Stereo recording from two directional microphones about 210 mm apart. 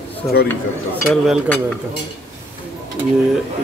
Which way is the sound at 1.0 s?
Centre (ahead or behind).